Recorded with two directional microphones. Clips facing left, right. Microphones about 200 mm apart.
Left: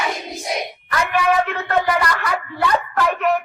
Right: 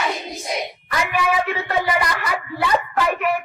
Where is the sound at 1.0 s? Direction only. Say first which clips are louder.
Left 3 dB; 10° right (ahead or behind).